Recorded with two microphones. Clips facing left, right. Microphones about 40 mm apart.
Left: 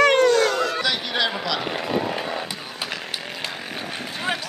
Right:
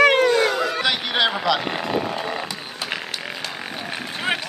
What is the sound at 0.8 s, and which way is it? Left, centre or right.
Speech, right.